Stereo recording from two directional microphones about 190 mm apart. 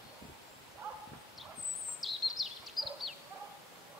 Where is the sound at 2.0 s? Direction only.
Centre (ahead or behind).